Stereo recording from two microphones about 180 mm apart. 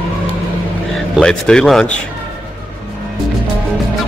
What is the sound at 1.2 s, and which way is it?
Speech, 5° left (ahead or behind).